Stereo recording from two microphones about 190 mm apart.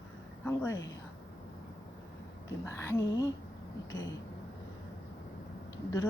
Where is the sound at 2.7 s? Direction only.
15° left (ahead or behind).